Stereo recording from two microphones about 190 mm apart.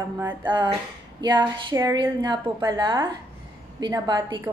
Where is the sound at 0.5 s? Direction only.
25° right (ahead or behind).